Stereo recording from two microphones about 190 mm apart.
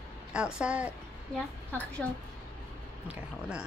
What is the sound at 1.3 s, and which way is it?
Speech, 5° left (ahead or behind).